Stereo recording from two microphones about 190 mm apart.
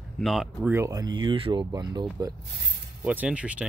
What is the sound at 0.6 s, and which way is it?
Speech, 15° right (ahead or behind).